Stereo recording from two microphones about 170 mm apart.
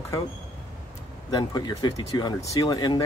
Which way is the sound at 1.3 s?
25° left (ahead or behind).